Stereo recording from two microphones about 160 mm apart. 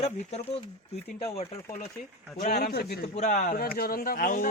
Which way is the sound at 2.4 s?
70° left (ahead or behind).